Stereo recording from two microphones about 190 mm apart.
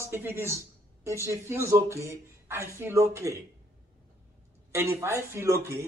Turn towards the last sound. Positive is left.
turn(degrees=-15)  # may be behind; listen again after turning